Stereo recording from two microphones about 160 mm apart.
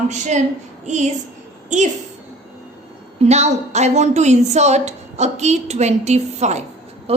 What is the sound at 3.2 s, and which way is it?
A woman's voice, 45° right (ahead or behind).